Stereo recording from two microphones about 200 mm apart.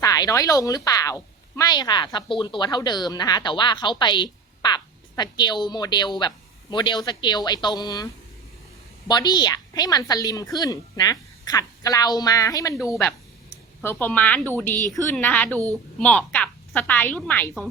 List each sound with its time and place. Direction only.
0.0 s a woman's voice: 15° left (ahead or behind)